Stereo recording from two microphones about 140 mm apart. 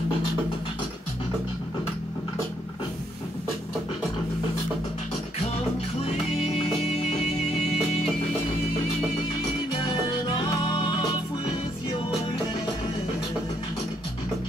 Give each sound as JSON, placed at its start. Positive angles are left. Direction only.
{"t": 7.1, "sound": "music", "side_deg": 50}